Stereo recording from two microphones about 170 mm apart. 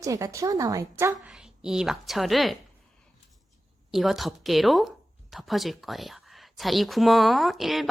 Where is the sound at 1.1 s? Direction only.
5° right (ahead or behind).